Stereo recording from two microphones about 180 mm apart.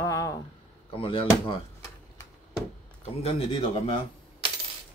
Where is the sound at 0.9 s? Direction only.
30° left (ahead or behind).